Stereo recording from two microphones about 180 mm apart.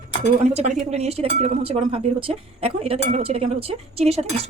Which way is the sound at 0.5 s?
40° right (ahead or behind).